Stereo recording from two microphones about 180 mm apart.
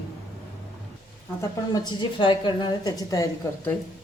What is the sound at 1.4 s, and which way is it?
A woman's voice, 20° left (ahead or behind).